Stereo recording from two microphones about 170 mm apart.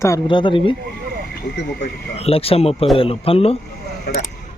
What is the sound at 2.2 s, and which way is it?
Speech, 35° left (ahead or behind).